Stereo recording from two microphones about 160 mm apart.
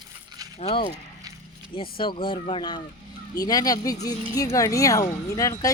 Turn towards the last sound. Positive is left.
turn(degrees=20)  # may be behind; listen again after turning